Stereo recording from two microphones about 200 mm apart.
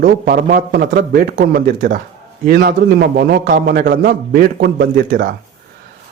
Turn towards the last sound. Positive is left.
turn(degrees=-45)  # may be behind; listen again after turning